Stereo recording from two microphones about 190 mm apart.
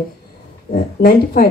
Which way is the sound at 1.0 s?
45° left (ahead or behind).